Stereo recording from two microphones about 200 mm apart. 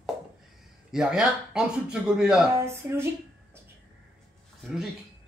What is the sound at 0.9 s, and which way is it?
Speech, 5° right (ahead or behind).